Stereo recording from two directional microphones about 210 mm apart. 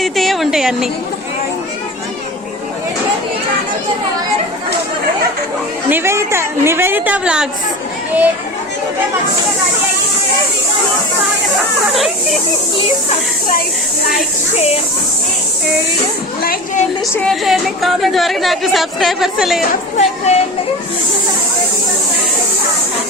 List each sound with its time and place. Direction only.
0.0 s a sound: centre (ahead or behind)
5.9 s a woman's voice: 10° right (ahead or behind)
11.9 s speech: centre (ahead or behind)
14.5 s speech: 30° left (ahead or behind)
16.4 s a woman's voice: 45° left (ahead or behind)
17.2 s speech: centre (ahead or behind)
20.0 s speech: 30° left (ahead or behind)